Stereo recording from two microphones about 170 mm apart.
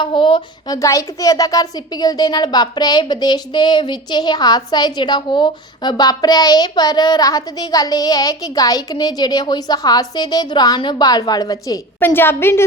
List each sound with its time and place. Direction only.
0.0 s speech: 30° left (ahead or behind); by 12.6 s 15° left (ahead or behind)